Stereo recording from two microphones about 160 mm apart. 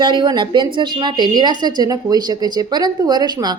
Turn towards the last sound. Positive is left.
turn(degrees=-25)  # may be behind; listen again after turning